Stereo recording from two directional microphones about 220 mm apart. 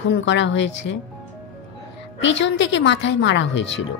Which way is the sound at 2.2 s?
55° left (ahead or behind).